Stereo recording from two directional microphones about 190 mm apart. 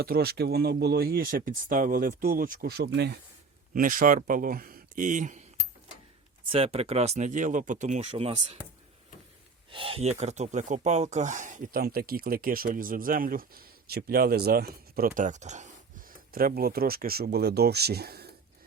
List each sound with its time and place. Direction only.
0.0 s speech: 55° right (ahead or behind)
3.8 s speech: 45° right (ahead or behind)
6.5 s speech: 30° right (ahead or behind)
9.7 s speech: 30° right (ahead or behind); by 18.3 s 55° right (ahead or behind)